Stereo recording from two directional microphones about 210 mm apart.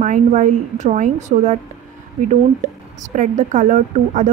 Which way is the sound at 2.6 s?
35° right (ahead or behind).